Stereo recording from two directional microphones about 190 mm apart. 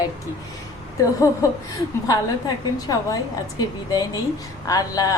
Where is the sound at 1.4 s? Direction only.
15° left (ahead or behind).